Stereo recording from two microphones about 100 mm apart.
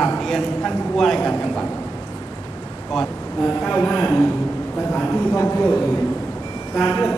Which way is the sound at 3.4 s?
15° left (ahead or behind).